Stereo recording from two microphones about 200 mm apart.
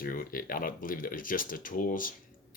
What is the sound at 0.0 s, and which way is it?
Speech, 45° left (ahead or behind).